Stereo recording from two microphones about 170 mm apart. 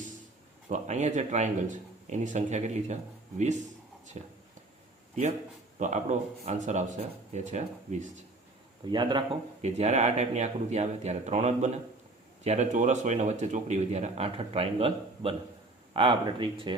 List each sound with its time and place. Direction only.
0.7 s speech: 45° right (ahead or behind)
5.8 s speech: 45° right (ahead or behind)
8.9 s speech: 25° right (ahead or behind)
9.6 s speech: 40° right (ahead or behind)